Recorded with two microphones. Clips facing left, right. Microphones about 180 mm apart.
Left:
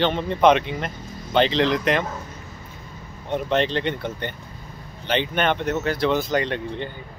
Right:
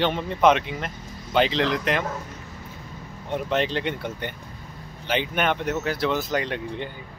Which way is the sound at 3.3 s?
5° right (ahead or behind).